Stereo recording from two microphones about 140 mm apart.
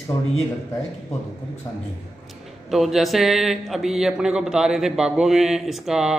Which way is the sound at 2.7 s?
Centre (ahead or behind).